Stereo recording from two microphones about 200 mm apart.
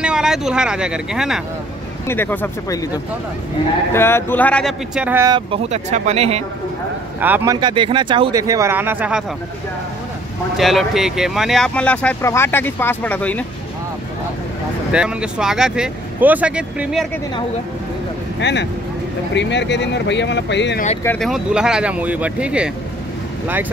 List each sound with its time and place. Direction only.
0.0 s speech: 5° right (ahead or behind)
2.0 s speech: 10° left (ahead or behind); by 5.3 s 10° right (ahead or behind)
5.3 s speech: 30° right (ahead or behind)
7.2 s speech: 10° right (ahead or behind)
7.6 s speech: 25° right (ahead or behind); by 9.2 s 10° right (ahead or behind)
10.6 s speech: centre (ahead or behind)
14.9 s speech: 5° right (ahead or behind)
18.4 s speech: 60° left (ahead or behind)
21.0 s speech: 10° left (ahead or behind)
21.3 s speech: 5° right (ahead or behind)